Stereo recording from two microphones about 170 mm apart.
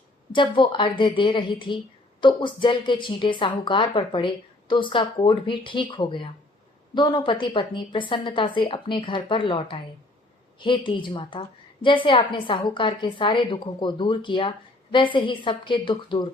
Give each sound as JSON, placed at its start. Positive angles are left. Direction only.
{"t": 0.3, "sound": "a woman's voice", "side_deg": 30}